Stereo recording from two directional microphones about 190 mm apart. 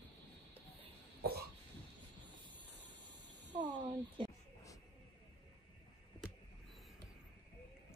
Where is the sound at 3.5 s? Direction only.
25° right (ahead or behind).